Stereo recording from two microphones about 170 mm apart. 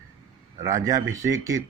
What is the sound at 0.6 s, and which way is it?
Speech, 20° right (ahead or behind).